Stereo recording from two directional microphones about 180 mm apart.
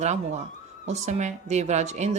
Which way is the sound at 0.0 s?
40° right (ahead or behind).